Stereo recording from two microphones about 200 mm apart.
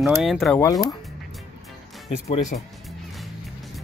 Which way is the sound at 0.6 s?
20° left (ahead or behind).